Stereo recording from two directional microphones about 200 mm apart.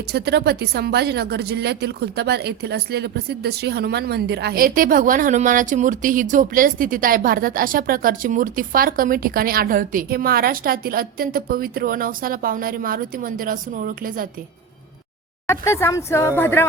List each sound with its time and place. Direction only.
0.1 s speech: 55° right (ahead or behind)
15.4 s speech: 15° left (ahead or behind)